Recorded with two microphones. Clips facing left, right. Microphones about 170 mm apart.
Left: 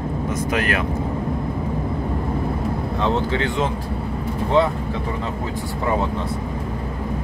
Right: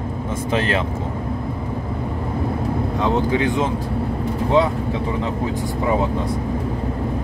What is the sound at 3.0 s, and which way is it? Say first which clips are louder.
Speech: right 2 dB; 15° right (ahead or behind).